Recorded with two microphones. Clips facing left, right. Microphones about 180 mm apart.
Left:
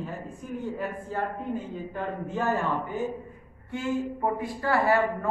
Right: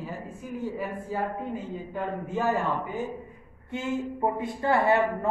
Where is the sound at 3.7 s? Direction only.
20° right (ahead or behind).